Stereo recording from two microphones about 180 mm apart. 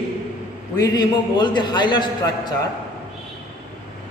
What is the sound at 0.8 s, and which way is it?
A man's voice, 25° left (ahead or behind).